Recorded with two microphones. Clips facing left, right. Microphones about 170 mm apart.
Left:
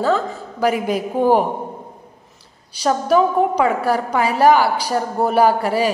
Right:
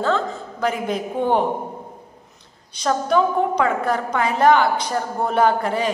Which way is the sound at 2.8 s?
10° left (ahead or behind).